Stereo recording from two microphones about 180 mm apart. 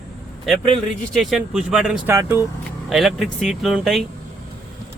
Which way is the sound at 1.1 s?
Centre (ahead or behind).